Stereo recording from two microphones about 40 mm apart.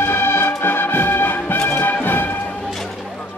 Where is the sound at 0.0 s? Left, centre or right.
Left.